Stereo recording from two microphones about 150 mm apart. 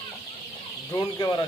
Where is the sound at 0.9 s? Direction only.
30° left (ahead or behind).